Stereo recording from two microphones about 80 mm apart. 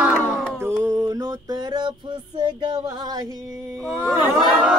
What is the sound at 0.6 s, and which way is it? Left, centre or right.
Music, right.